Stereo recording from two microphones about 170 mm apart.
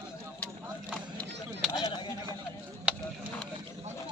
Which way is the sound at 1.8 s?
25° left (ahead or behind).